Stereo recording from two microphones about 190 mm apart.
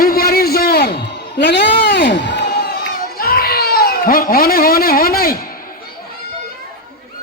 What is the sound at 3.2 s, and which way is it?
Baby cry, 50° left (ahead or behind).